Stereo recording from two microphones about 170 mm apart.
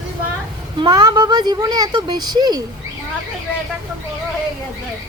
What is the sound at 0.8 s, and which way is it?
A woman's voice, 25° right (ahead or behind).